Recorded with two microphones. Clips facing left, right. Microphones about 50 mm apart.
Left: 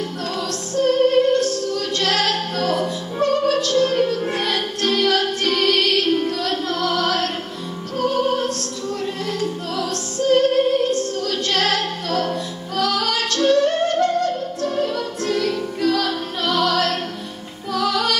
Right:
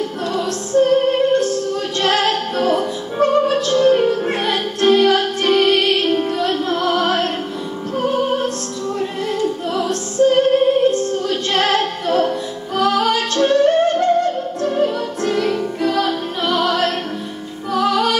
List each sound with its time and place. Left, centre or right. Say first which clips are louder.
0.3 s music: right 6 dB; right